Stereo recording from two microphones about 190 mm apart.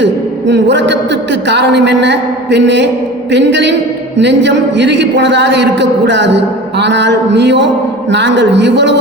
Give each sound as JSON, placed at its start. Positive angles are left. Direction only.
{"t": 0.0, "sound": "speech", "side_deg": -70}